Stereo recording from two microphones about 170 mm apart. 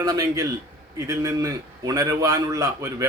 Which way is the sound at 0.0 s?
20° right (ahead or behind).